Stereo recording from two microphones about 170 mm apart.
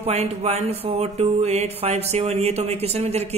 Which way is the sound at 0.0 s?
35° right (ahead or behind).